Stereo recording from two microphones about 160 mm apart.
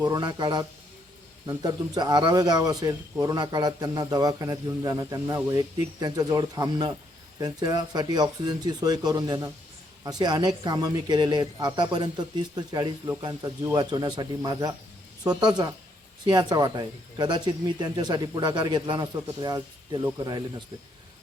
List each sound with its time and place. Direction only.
0.0 s a man's voice: 25° right (ahead or behind)